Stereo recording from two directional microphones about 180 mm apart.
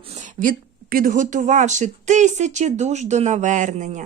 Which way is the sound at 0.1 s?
45° right (ahead or behind).